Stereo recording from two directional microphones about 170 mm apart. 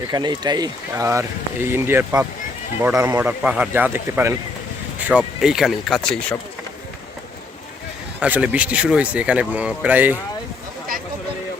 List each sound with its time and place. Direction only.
0.1 s speech: 25° right (ahead or behind); by 6.3 s 5° left (ahead or behind)
8.2 s speech: 10° right (ahead or behind)